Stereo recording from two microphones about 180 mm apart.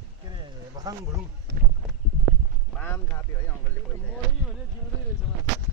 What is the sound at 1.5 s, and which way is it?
Speech, 70° right (ahead or behind).